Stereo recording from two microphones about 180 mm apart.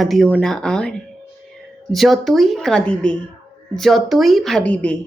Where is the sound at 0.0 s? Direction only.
Centre (ahead or behind).